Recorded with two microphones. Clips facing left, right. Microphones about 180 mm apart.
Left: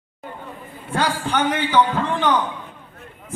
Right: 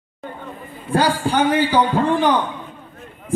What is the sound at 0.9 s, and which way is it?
A man's voice, 35° right (ahead or behind).